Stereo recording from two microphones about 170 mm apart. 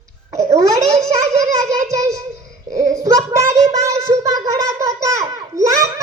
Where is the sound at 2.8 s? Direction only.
20° right (ahead or behind).